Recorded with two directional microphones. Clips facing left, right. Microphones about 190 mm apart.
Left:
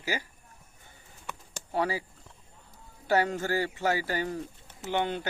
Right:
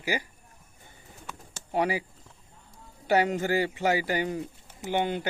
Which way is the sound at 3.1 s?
15° right (ahead or behind).